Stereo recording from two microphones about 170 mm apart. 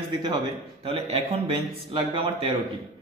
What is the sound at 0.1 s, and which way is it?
Speech, 25° right (ahead or behind).